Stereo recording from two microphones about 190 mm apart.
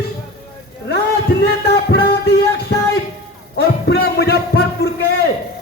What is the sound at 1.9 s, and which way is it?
Music, 60° left (ahead or behind).